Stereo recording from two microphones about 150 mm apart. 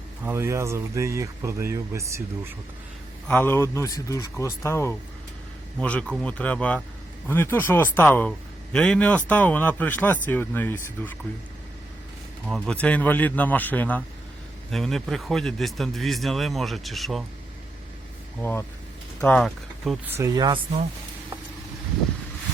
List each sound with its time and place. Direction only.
0.3 s speech: 15° right (ahead or behind)
3.2 s speech: 15° left (ahead or behind)
5.8 s speech: 10° left (ahead or behind)
12.5 s speech: 5° right (ahead or behind)
12.7 s speech: 10° left (ahead or behind)
18.3 s speech: 15° left (ahead or behind)
20.1 s speech: 20° right (ahead or behind)